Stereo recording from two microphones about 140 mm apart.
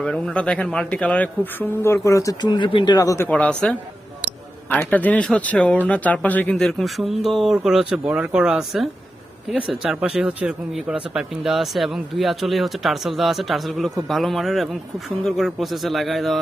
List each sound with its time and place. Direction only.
0.0 s speech: 5° left (ahead or behind); by 3.2 s 25° left (ahead or behind)
3.2 s speech: 10° left (ahead or behind)
4.7 s speech: 10° left (ahead or behind)